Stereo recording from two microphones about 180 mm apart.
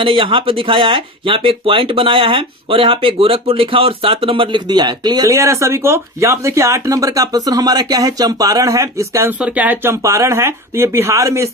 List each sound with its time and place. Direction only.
0.0 s speech: 30° right (ahead or behind)